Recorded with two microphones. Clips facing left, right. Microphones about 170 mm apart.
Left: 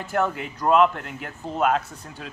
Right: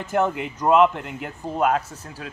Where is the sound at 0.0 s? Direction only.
20° right (ahead or behind).